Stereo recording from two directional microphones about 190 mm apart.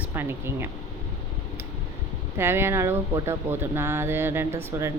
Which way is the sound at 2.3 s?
15° right (ahead or behind).